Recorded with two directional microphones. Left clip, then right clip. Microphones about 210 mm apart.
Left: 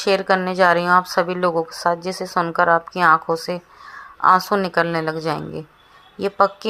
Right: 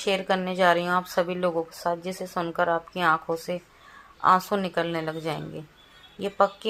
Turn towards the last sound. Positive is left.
turn(degrees=30)  # may be behind; listen again after turning